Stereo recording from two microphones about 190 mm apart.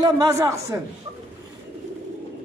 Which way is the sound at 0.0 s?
20° right (ahead or behind).